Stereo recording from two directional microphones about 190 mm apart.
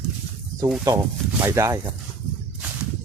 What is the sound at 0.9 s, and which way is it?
Speech, 20° right (ahead or behind).